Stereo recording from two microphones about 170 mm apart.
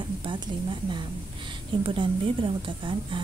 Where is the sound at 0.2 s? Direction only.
30° right (ahead or behind).